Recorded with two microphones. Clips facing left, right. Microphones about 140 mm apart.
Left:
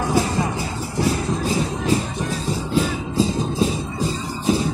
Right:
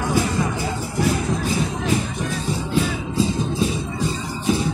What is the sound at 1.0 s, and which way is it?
Music, 35° left (ahead or behind).